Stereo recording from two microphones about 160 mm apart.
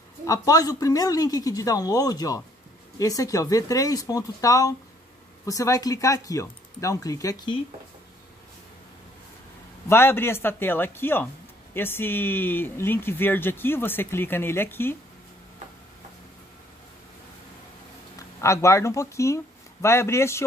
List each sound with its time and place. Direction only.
0.2 s speech: 20° left (ahead or behind)
9.8 s speech: 15° left (ahead or behind)
18.4 s speech: 20° left (ahead or behind)